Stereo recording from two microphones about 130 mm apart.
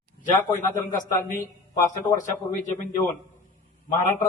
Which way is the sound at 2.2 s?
80° left.